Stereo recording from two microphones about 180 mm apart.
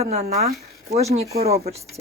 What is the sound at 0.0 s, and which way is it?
Speech, 35° right (ahead or behind).